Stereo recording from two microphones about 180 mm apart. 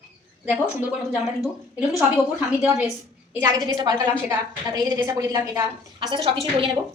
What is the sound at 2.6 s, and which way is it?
A woman's voice, 10° right (ahead or behind).